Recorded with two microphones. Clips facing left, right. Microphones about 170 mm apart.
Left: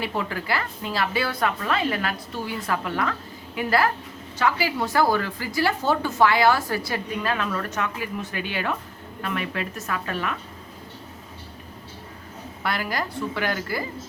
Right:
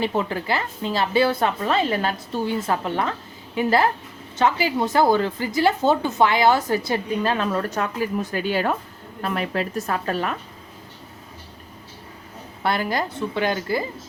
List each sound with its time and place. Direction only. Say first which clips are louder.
0.0 s a woman's voice: right 5 dB; 25° right (ahead or behind)
12.6 s a woman's voice: right 4 dB; 25° right (ahead or behind)